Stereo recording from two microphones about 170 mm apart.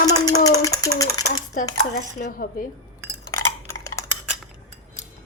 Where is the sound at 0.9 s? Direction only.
20° left (ahead or behind).